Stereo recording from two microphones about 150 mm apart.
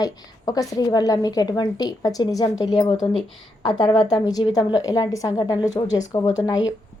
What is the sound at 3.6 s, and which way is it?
A woman's voice, 30° left (ahead or behind).